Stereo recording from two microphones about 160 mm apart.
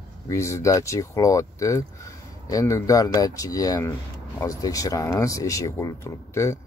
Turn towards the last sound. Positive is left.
turn(degrees=15)  # may be behind; listen again after turning